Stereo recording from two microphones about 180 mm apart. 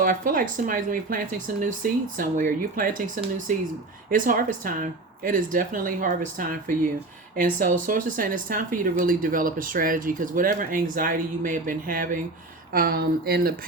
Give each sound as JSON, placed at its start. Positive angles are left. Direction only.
{"t": 0.0, "sound": "speech", "side_deg": -50}